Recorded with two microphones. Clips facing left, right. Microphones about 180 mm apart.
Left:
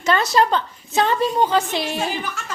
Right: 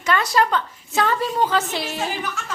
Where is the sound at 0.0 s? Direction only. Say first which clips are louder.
Left 2 dB; 25° left (ahead or behind).